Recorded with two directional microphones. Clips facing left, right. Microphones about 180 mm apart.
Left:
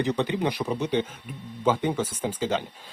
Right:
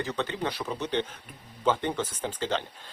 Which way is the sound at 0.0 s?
15° left (ahead or behind).